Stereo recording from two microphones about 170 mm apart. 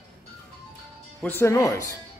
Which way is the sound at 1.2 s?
15° left (ahead or behind).